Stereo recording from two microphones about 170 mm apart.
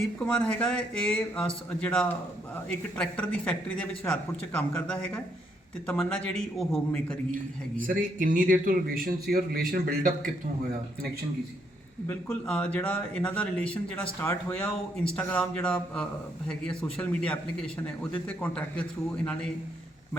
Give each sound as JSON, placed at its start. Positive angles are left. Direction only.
{"t": 0.3, "sound": "speech", "side_deg": 5}
{"t": 7.8, "sound": "a man's voice", "side_deg": -50}
{"t": 12.0, "sound": "speech", "side_deg": 5}